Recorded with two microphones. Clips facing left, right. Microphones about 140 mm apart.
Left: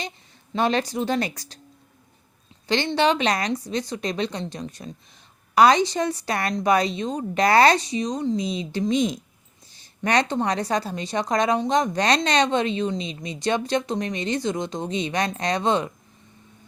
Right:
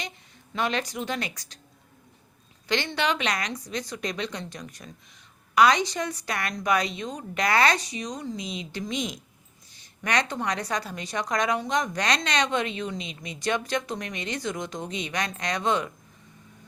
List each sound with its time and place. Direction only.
0.5 s a woman's voice: 30° left (ahead or behind)
2.6 s a woman's voice: 30° left (ahead or behind)